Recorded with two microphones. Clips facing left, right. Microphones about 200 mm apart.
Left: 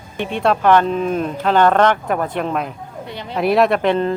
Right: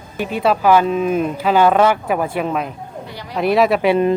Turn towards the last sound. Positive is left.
turn(degrees=-10)  # may be behind; listen again after turning